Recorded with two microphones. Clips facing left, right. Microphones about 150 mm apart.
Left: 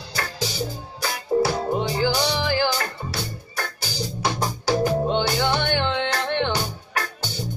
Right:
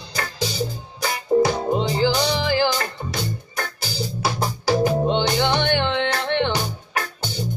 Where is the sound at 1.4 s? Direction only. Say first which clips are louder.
Right 2 dB; 20° right (ahead or behind).